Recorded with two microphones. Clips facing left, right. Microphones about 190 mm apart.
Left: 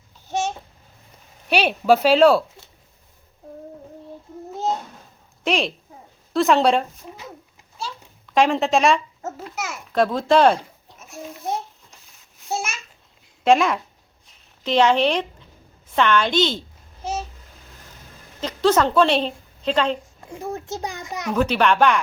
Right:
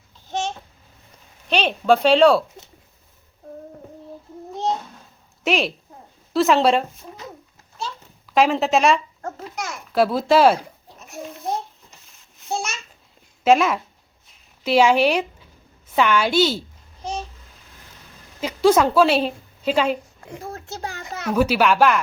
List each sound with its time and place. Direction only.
0.3 s babbling: 10° left (ahead or behind)
1.5 s a child's voice: 10° left (ahead or behind)
5.4 s a sound: centre (ahead or behind)
8.3 s a child's voice: centre (ahead or behind)
9.9 s speech: 5° right (ahead or behind)
11.2 s a sound: centre (ahead or behind)
13.4 s a woman's voice: centre (ahead or behind)
17.0 s babbling: 5° left (ahead or behind)
18.3 s a woman's voice: 10° right (ahead or behind)
20.4 s a child's voice: 20° left (ahead or behind)
21.3 s a child's voice: 5° right (ahead or behind)